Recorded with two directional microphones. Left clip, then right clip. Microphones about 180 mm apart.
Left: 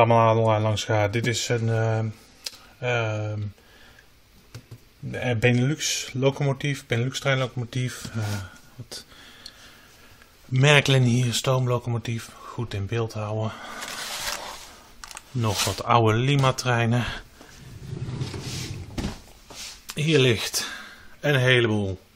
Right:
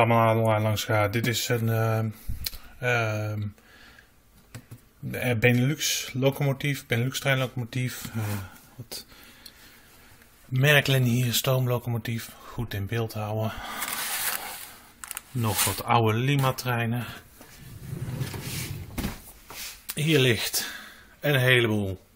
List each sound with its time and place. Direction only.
0.0 s speech: 5° left (ahead or behind)
2.8 s speech: 15° right (ahead or behind)
5.1 s speech: 5° right (ahead or behind)
10.5 s speech: 15° left (ahead or behind)
11.1 s speech: centre (ahead or behind)
16.3 s speech: 15° left (ahead or behind)
17.8 s vehicle: centre (ahead or behind)
19.4 s a sound: 15° left (ahead or behind)
19.9 s speech: centre (ahead or behind)